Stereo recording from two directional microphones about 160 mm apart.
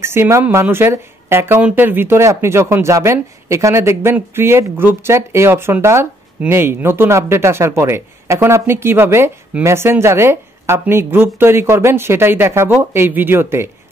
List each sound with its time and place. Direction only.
0.0 s speech: 15° right (ahead or behind)